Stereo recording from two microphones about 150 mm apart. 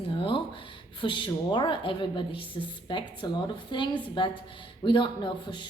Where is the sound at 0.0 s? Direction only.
35° left (ahead or behind).